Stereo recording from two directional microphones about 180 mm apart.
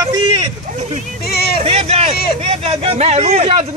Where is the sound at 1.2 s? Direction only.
60° left (ahead or behind).